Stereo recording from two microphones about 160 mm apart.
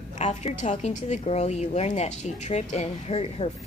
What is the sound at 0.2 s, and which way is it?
A woman's voice, 45° left (ahead or behind).